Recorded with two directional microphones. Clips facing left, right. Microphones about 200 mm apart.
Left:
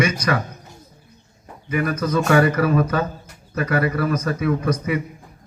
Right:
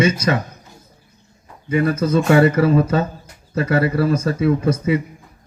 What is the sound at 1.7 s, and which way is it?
A man's voice, 30° right (ahead or behind).